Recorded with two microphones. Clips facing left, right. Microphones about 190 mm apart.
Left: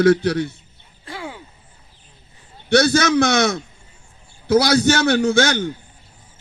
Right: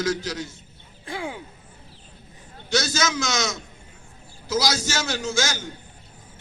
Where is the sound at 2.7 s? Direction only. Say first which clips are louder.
Left 9 dB; 60° left (ahead or behind).